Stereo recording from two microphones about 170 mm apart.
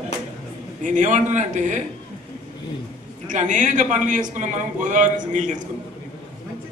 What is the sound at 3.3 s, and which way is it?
A man's voice, 45° right (ahead or behind).